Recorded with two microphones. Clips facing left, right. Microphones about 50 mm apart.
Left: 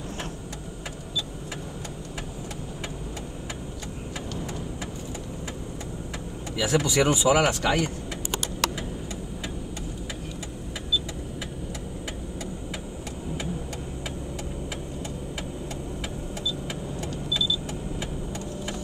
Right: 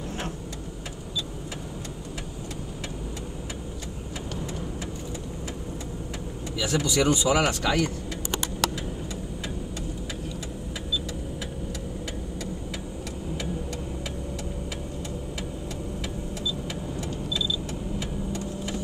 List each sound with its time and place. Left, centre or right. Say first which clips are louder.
6.5 s speech: left 2 dB; centre